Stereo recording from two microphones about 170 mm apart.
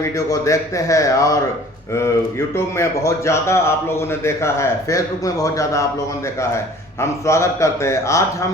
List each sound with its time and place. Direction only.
0.0 s speech: 20° left (ahead or behind)
2.7 s a man's voice: 15° left (ahead or behind)
7.0 s a man's voice: 15° left (ahead or behind)